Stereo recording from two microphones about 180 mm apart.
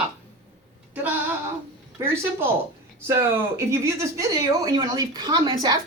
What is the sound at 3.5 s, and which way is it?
Speech, 15° right (ahead or behind).